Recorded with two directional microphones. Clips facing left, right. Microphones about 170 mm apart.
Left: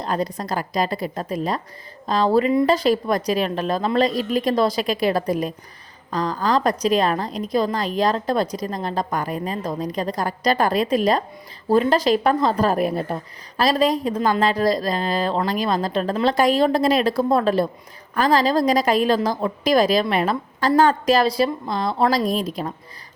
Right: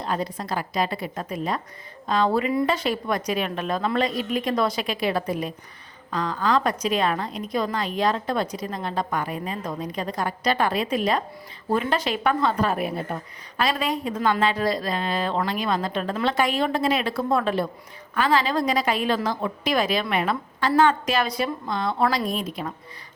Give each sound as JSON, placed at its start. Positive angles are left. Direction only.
{"t": 0.0, "sound": "a woman's voice", "side_deg": 40}